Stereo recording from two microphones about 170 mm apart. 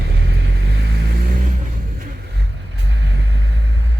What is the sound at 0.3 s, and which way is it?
Vehicle, 90° right.